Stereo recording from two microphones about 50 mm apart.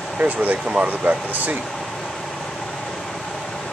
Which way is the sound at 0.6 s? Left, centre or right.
Centre.